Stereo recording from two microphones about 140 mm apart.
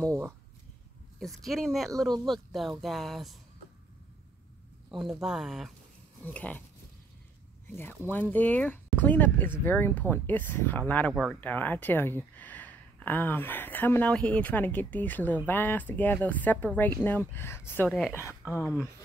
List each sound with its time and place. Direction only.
0.0 s speech: 25° right (ahead or behind)
1.2 s speech: centre (ahead or behind)
5.2 s speech: 5° right (ahead or behind)
6.2 s speech: 10° left (ahead or behind)
7.7 s speech: 15° left (ahead or behind)
17.8 s speech: centre (ahead or behind)